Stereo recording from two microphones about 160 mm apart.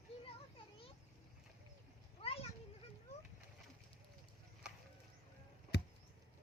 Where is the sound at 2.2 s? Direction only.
35° left (ahead or behind).